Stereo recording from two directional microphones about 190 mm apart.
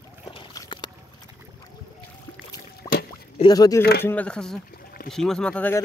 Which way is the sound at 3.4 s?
20° left (ahead or behind).